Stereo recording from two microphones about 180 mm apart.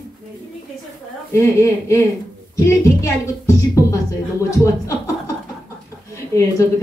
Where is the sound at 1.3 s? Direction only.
15° left (ahead or behind).